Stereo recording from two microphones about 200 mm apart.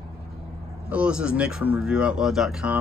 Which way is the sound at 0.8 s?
5° right (ahead or behind).